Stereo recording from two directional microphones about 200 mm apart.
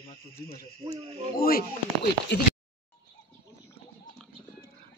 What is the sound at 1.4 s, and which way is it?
Speech, 45° left (ahead or behind).